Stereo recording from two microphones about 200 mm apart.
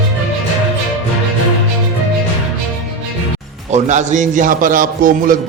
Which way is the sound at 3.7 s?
35° right (ahead or behind).